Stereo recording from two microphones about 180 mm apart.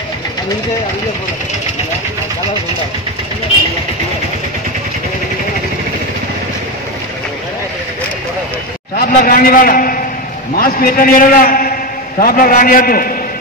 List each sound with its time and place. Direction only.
8.9 s a man's voice: 55° left (ahead or behind)